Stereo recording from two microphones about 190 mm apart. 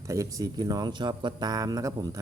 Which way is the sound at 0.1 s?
15° right (ahead or behind).